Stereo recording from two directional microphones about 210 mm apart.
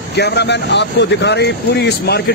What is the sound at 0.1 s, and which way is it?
Speech, 55° left (ahead or behind).